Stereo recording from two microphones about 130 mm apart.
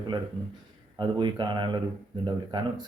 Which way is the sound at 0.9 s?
35° right (ahead or behind).